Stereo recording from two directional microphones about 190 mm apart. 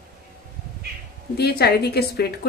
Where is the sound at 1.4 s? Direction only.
55° left (ahead or behind).